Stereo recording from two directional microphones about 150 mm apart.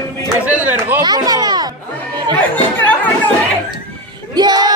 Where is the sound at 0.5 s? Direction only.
15° right (ahead or behind).